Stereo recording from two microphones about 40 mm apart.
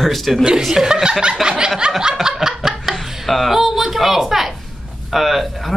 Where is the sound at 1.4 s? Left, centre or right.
Centre.